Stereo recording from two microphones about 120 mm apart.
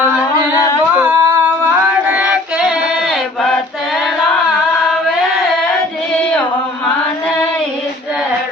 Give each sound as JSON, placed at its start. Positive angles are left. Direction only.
{"t": 0.9, "sound": "female singing", "side_deg": -15}